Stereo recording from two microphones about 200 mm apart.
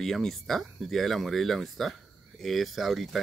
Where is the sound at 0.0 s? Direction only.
Centre (ahead or behind).